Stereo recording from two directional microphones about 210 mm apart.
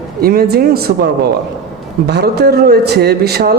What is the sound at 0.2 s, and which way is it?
A man's voice, 45° right (ahead or behind).